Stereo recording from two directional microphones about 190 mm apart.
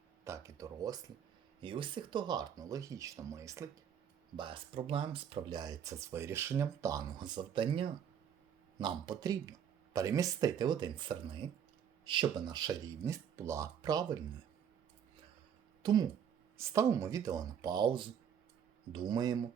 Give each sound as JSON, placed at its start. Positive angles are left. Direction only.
{"t": 0.3, "sound": "speech", "side_deg": -15}
{"t": 15.8, "sound": "speech", "side_deg": -20}